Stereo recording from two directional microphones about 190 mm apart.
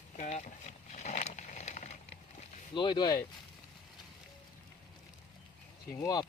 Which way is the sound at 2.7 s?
25° left (ahead or behind).